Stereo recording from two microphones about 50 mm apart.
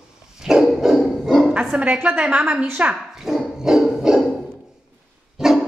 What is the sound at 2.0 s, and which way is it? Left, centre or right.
Speech, right.